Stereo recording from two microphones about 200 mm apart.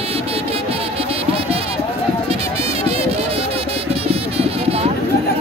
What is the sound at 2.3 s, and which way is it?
Music, 30° right (ahead or behind).